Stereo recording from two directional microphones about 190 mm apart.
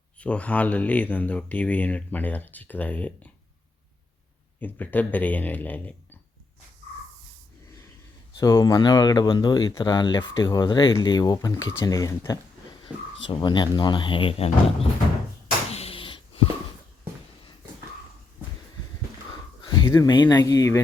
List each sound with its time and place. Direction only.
0.2 s speech: 5° left (ahead or behind)
4.6 s speech: 10° left (ahead or behind)
8.4 s speech: 15° left (ahead or behind)
12.9 s a sound: 10° right (ahead or behind)
13.3 s speech: 25° left (ahead or behind)
15.7 s a sound: 30° left (ahead or behind)
19.6 s speech: 20° left (ahead or behind)